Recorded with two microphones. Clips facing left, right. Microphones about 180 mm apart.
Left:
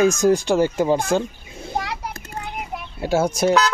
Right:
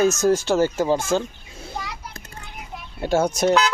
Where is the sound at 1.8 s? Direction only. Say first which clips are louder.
Left 7 dB; 65° left (ahead or behind).